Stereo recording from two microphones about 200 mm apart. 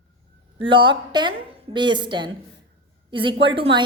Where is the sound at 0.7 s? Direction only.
25° right (ahead or behind).